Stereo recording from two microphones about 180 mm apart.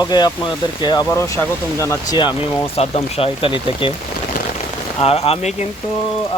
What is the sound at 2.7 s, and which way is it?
Speech, 35° left (ahead or behind).